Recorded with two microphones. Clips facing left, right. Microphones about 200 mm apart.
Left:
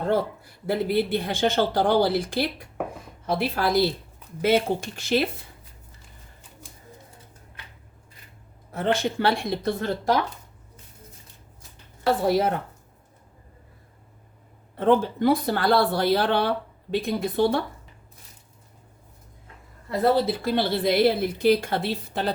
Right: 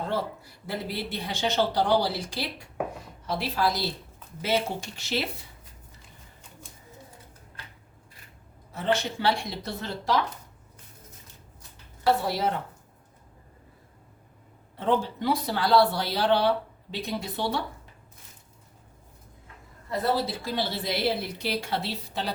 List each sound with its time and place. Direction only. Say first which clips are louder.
0.1 s speech: left 6 dB; 55° left (ahead or behind)
8.7 s speech: left 3 dB; 55° left (ahead or behind)
12.2 s speech: left 6 dB; 50° left (ahead or behind)
14.8 s speech: left 6 dB; 55° left (ahead or behind)
20.2 s speech: left 6 dB; 60° left (ahead or behind)